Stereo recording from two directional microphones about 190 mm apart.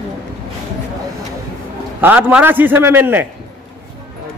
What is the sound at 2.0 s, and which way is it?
A man's voice, 10° right (ahead or behind).